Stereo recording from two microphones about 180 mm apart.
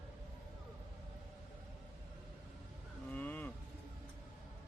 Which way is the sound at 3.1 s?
10° left (ahead or behind).